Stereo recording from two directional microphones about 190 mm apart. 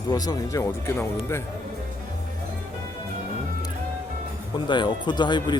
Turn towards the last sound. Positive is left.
turn(degrees=25)  # may be behind; listen again after turning